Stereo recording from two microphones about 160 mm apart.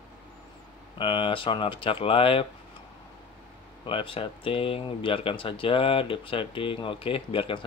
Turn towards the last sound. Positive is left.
turn(degrees=35)  # may be behind; listen again after turning